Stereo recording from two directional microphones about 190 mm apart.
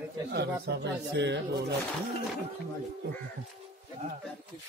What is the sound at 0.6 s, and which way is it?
Speech, 65° right (ahead or behind).